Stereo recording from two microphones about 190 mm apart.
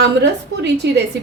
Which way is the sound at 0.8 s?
60° right (ahead or behind).